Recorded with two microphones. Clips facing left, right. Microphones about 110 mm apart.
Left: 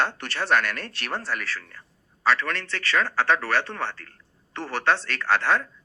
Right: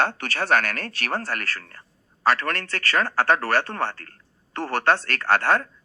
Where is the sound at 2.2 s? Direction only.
50° right (ahead or behind).